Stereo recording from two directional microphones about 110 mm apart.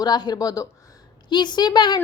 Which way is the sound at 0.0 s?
40° left (ahead or behind).